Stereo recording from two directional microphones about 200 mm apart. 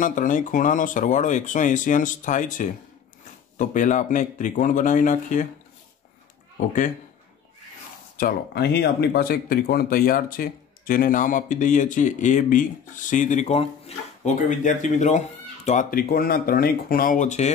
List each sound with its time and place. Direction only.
0.0 s speech: 40° left (ahead or behind)
8.2 s speech: 45° left (ahead or behind)